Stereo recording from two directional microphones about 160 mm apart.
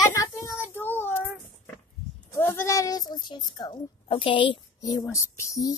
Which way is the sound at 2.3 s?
15° left (ahead or behind).